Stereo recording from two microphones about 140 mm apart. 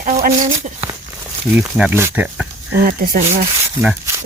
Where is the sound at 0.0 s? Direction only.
75° right (ahead or behind).